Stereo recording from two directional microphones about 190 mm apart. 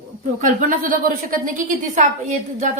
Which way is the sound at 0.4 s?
45° right (ahead or behind).